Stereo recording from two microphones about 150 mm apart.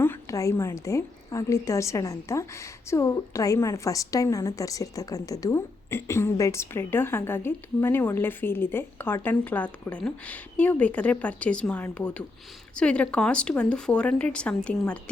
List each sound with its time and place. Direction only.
0.0 s a woman's voice: 20° left (ahead or behind)